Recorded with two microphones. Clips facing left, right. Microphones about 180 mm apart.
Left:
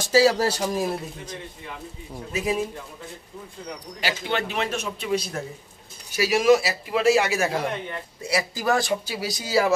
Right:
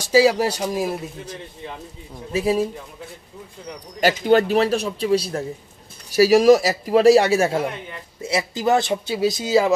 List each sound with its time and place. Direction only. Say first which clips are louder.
0.0 s speech: right 2 dB; 15° right (ahead or behind)
2.3 s a man's voice: right 5 dB; 30° right (ahead or behind)
4.2 s a man's voice: right 12 dB; 40° right (ahead or behind); by 9.7 s 20° right (ahead or behind)